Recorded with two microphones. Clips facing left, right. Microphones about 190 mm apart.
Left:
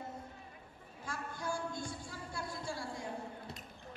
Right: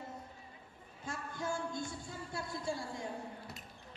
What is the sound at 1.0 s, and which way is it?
Speech, 20° right (ahead or behind).